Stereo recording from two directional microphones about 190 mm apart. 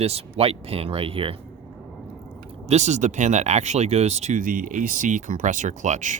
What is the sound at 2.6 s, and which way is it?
Speech, 35° right (ahead or behind).